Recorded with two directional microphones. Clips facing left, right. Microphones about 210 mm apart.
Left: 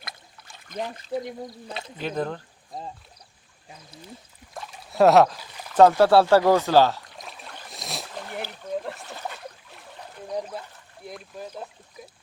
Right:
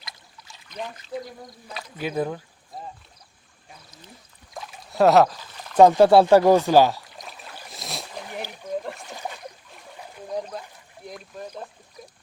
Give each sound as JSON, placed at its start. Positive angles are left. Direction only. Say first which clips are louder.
{"t": 0.0, "sound": "a sound", "louder": "left 2 dB", "side_deg": 55}
{"t": 0.9, "sound": "speech", "louder": "left 4 dB", "side_deg": 35}
{"t": 2.0, "sound": "speech", "louder": "right 2 dB", "side_deg": -10}
{"t": 4.5, "sound": "rowboat", "louder": "left 1 dB", "side_deg": 0}
{"t": 5.4, "sound": "pour", "louder": "even", "side_deg": 10}
{"t": 5.7, "sound": "speech", "louder": "right 2 dB", "side_deg": -15}
{"t": 7.1, "sound": "boat", "louder": "even", "side_deg": 0}
{"t": 9.6, "sound": "a sound", "louder": "right 1 dB", "side_deg": -5}
{"t": 11.0, "sound": "speech", "louder": "even", "side_deg": 5}